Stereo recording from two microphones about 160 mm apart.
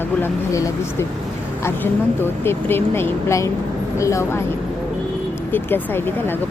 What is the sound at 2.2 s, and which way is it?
Speech, 15° left (ahead or behind).